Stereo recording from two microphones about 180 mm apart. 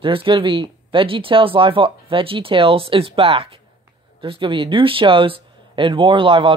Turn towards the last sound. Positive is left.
turn(degrees=-30)  # may be behind; listen again after turning